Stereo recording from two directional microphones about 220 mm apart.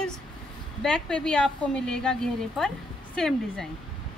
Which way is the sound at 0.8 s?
5° left (ahead or behind).